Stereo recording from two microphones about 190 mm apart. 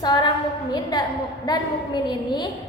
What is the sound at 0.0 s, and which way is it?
A woman's voice, 20° left (ahead or behind).